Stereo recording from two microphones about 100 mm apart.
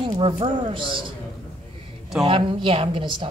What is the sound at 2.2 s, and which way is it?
Speech, 60° right (ahead or behind).